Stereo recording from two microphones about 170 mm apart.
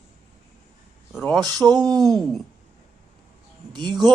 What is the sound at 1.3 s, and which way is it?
Speech, centre (ahead or behind).